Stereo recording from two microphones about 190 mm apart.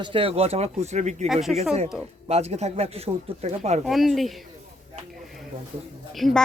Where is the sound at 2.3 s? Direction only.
35° right (ahead or behind).